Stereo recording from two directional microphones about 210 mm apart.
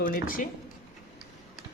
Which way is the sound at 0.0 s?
40° left (ahead or behind).